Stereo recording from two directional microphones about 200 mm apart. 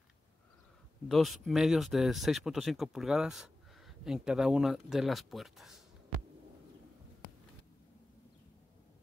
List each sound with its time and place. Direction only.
1.0 s speech: centre (ahead or behind)